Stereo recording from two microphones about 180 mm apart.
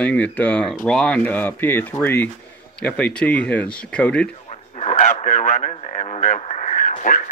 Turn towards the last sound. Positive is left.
turn(degrees=50)  # may be behind; listen again after turning